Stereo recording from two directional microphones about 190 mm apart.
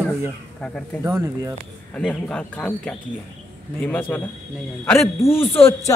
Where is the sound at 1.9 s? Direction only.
5° left (ahead or behind).